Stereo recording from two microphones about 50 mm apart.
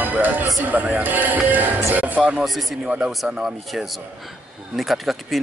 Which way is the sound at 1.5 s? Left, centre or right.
Right.